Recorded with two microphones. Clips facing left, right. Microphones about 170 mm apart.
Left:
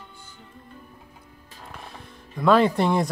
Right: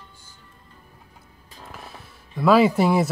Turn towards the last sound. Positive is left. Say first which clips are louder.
# right 2 dB
turn(degrees=-5)  # may be behind; listen again after turning